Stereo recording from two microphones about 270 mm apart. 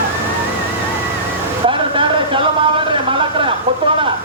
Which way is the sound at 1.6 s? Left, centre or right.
Centre.